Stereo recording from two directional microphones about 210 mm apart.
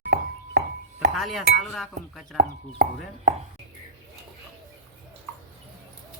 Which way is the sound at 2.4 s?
45° right (ahead or behind).